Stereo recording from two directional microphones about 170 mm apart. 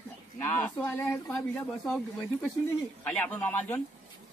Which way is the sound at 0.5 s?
10° left (ahead or behind).